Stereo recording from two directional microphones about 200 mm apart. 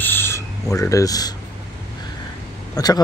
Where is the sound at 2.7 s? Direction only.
20° left (ahead or behind).